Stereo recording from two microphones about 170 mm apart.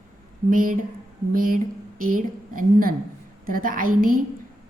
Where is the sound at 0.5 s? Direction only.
55° right (ahead or behind).